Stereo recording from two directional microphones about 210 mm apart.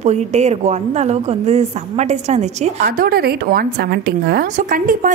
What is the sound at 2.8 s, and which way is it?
A woman's voice, 45° right (ahead or behind).